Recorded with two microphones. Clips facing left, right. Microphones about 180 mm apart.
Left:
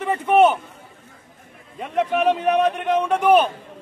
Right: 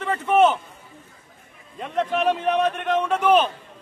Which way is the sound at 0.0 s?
15° left (ahead or behind).